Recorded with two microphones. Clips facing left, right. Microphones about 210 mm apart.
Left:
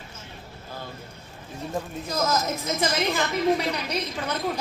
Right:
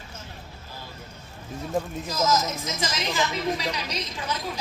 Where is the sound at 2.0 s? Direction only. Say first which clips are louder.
Left 1 dB; 55° left (ahead or behind).